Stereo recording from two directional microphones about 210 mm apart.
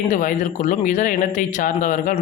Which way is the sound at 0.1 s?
35° left (ahead or behind).